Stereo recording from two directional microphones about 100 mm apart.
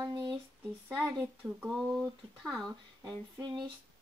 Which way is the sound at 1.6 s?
5° right (ahead or behind).